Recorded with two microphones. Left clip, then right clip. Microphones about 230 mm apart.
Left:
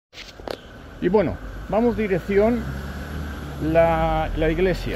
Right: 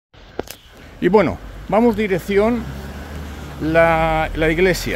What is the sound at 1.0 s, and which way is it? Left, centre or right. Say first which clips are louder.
Speech: right 5 dB; right.